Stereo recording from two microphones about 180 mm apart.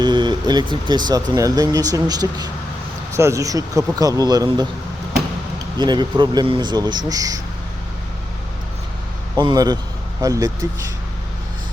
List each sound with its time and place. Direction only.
0.0 s speech: 25° right (ahead or behind)
5.8 s speech: 25° right (ahead or behind)
9.3 s a man's voice: 20° right (ahead or behind)